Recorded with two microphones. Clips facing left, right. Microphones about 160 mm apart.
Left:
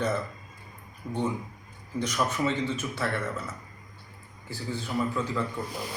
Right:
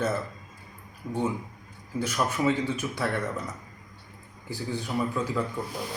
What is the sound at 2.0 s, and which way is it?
Speech, 5° right (ahead or behind).